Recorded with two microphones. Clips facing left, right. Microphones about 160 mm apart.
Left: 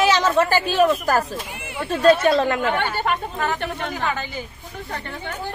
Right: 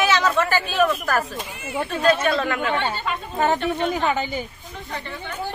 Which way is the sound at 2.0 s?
30° left (ahead or behind).